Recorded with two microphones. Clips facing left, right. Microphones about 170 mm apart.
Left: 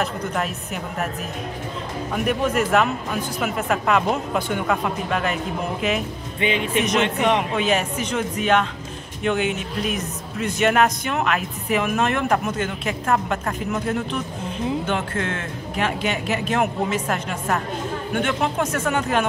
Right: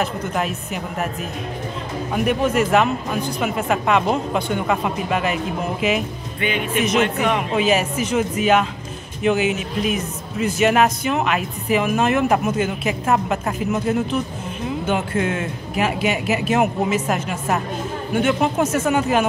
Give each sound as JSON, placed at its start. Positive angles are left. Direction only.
{"t": 0.0, "sound": "speech", "side_deg": 0}
{"t": 2.1, "sound": "speech", "side_deg": 0}
{"t": 6.4, "sound": "speech", "side_deg": 25}
{"t": 6.8, "sound": "speech", "side_deg": 0}